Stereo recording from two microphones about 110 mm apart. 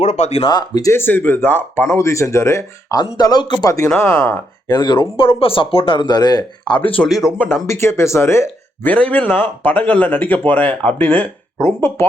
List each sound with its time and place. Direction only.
0.0 s speech: 90° left
0.4 s speech: 35° left (ahead or behind)
0.9 s speech: 20° left (ahead or behind)
2.0 s speech: 25° left (ahead or behind)
3.2 s speech: 40° left (ahead or behind)
3.8 s speech: 10° left (ahead or behind)
4.7 s speech: 40° left (ahead or behind)
7.0 s speech: centre (ahead or behind)
7.3 s speech: 15° left (ahead or behind)
11.6 s speech: 25° left (ahead or behind)